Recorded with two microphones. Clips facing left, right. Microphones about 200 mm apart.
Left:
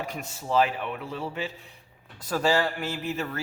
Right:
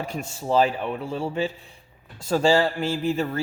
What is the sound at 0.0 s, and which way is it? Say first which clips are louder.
A man's voice: right 4 dB; 30° right (ahead or behind).